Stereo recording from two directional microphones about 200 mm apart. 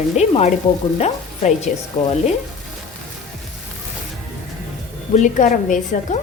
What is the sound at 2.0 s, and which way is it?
Speech, 35° left (ahead or behind).